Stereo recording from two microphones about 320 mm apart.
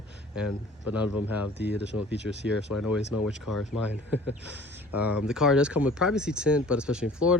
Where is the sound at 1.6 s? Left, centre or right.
Right.